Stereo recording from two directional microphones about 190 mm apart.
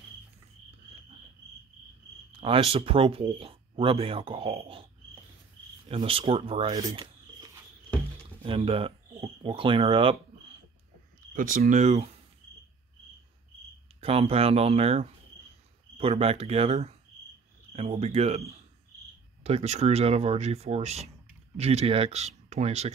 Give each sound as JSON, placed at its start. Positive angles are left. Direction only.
{"t": 2.3, "sound": "speech", "side_deg": -30}
{"t": 5.9, "sound": "speech", "side_deg": -30}
{"t": 6.8, "sound": "a sound", "side_deg": -20}
{"t": 8.4, "sound": "speech", "side_deg": -30}
{"t": 11.3, "sound": "speech", "side_deg": -45}
{"t": 14.0, "sound": "speech", "side_deg": -30}
{"t": 19.4, "sound": "speech", "side_deg": -35}